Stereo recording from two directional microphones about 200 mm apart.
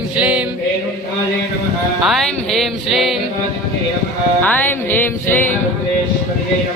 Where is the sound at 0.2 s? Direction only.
5° right (ahead or behind).